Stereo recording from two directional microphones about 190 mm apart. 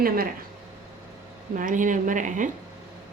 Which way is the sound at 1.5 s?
45° right (ahead or behind).